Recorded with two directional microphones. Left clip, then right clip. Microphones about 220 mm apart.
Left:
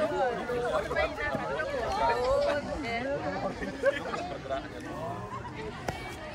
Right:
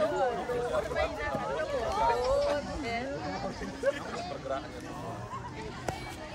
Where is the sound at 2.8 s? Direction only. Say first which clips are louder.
Left 1 dB; 45° right (ahead or behind).